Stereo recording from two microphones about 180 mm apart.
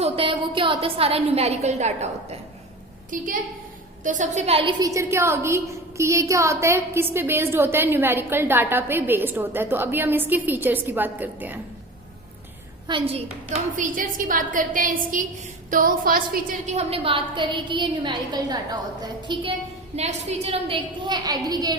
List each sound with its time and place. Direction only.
0.0 s a woman's voice: 30° right (ahead or behind)
3.1 s a woman's voice: 45° right (ahead or behind)
4.8 s a woman's voice: 15° right (ahead or behind)
12.9 s a woman's voice: 35° right (ahead or behind)
13.7 s a woman's voice: 45° right (ahead or behind); by 21.8 s 20° right (ahead or behind)